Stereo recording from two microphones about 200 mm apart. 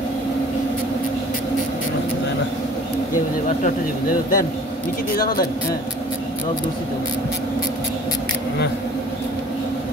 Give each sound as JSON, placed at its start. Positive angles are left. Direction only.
{"t": 3.6, "sound": "speech", "side_deg": 45}